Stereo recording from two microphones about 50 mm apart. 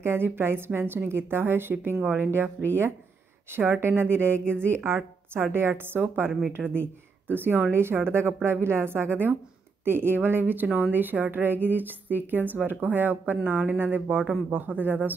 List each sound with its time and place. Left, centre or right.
0.0 s a woman's voice: right
7.7 s a woman's voice: right